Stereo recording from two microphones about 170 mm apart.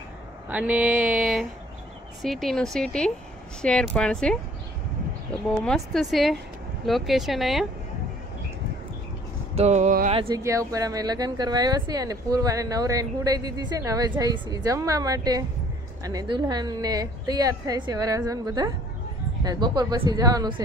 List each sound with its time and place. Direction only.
0.5 s a sound: 10° right (ahead or behind)
2.2 s speech: centre (ahead or behind)
5.6 s speech: centre (ahead or behind)
9.6 s a sound: 45° right (ahead or behind)
10.1 s speech: 30° right (ahead or behind)
10.4 s speech: 20° right (ahead or behind)